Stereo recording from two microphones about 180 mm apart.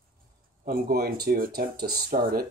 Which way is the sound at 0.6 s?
55° right (ahead or behind).